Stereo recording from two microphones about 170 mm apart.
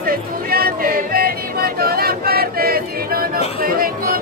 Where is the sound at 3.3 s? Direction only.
35° left (ahead or behind).